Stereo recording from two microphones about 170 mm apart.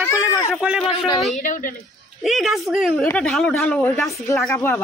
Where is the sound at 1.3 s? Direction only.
50° left (ahead or behind).